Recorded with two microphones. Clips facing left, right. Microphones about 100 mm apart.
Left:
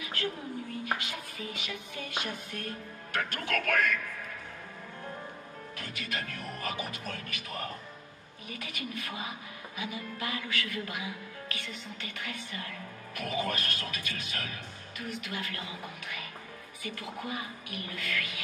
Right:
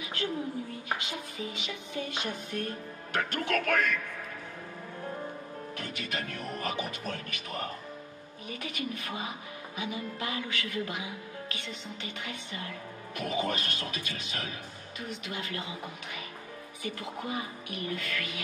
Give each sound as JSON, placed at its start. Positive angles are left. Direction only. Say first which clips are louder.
{"t": 0.0, "sound": "a sound", "louder": "even", "side_deg": -20}
{"t": 0.8, "sound": "speech", "louder": "even", "side_deg": -25}
{"t": 5.8, "sound": "speech", "louder": "right 1 dB", "side_deg": -25}